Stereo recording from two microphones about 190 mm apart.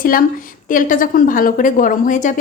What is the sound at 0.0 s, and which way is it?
A woman's voice, 50° left (ahead or behind).